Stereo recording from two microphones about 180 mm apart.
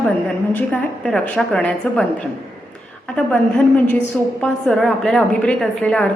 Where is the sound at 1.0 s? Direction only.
5° left (ahead or behind).